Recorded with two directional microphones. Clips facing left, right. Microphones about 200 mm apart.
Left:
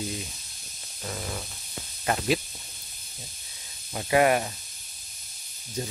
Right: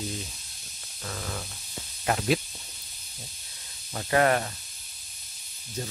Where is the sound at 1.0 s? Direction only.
15° left (ahead or behind).